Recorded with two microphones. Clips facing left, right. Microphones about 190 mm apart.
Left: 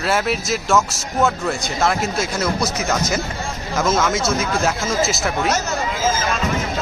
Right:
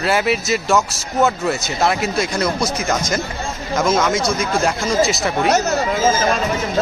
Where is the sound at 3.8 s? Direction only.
5° left (ahead or behind).